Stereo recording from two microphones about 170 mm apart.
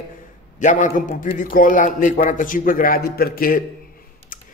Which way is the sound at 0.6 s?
45° left (ahead or behind).